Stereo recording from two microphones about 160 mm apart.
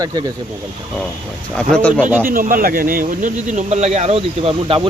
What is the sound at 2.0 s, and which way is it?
Speech, 15° right (ahead or behind).